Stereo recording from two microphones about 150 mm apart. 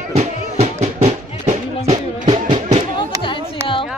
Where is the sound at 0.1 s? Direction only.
50° right (ahead or behind).